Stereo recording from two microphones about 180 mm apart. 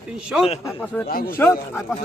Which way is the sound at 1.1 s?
55° left (ahead or behind).